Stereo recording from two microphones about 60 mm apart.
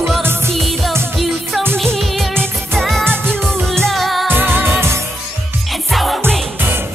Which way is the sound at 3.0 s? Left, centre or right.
Right.